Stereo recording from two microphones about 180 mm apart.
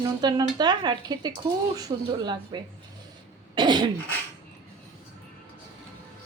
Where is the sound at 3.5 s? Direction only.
25° right (ahead or behind).